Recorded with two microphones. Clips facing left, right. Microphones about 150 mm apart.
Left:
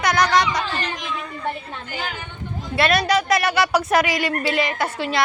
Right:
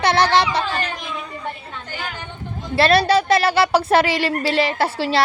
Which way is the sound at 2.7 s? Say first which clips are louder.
Right 4 dB; 30° right (ahead or behind).